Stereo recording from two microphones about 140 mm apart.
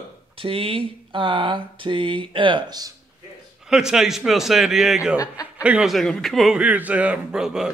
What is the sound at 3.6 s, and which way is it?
A man's voice, 5° right (ahead or behind).